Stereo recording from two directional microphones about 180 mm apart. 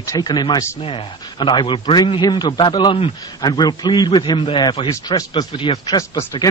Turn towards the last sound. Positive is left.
turn(degrees=20)  # may be behind; listen again after turning